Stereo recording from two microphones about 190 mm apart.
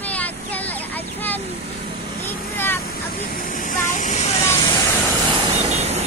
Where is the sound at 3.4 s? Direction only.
45° left (ahead or behind).